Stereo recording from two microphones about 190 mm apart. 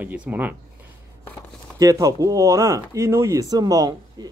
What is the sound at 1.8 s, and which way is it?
Speech, 15° right (ahead or behind).